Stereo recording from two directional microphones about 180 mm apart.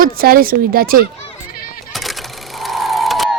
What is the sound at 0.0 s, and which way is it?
Speech, 55° right (ahead or behind).